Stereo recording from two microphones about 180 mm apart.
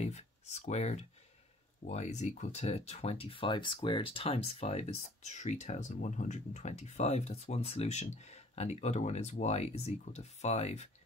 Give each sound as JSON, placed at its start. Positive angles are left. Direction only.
{"t": 0.0, "sound": "speech", "side_deg": 40}